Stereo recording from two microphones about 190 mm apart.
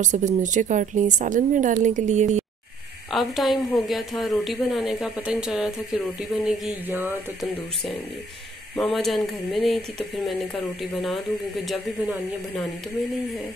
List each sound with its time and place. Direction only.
0.0 s a woman's voice: 40° right (ahead or behind)
3.1 s a woman's voice: centre (ahead or behind)
8.9 s a woman's voice: centre (ahead or behind)